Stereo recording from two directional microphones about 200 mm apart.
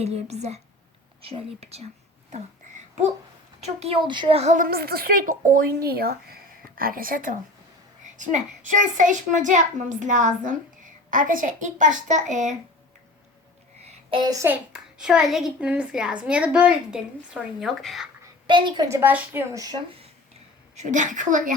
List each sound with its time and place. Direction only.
0.0 s a child's voice: 30° right (ahead or behind)
3.6 s a woman's voice: 30° right (ahead or behind)
14.1 s speech: 20° right (ahead or behind)
14.4 s a child's voice: 5° right (ahead or behind)
18.4 s speech: 25° right (ahead or behind)
20.7 s a child's voice: 40° right (ahead or behind)